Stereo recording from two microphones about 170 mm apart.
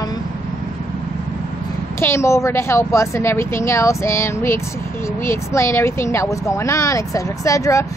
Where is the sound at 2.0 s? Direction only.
15° left (ahead or behind).